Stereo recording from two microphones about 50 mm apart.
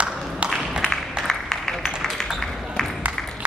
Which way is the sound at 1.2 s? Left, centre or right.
Centre.